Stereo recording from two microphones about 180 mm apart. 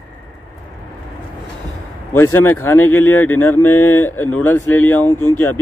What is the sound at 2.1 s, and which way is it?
Speech, 10° left (ahead or behind).